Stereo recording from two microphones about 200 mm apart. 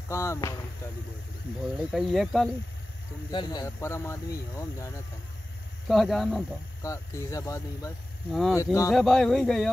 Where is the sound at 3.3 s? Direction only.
20° left (ahead or behind).